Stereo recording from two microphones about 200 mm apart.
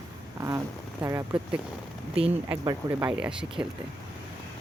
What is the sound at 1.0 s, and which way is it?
Speech, 15° right (ahead or behind).